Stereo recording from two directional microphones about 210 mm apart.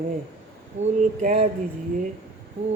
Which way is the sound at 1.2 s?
35° right (ahead or behind).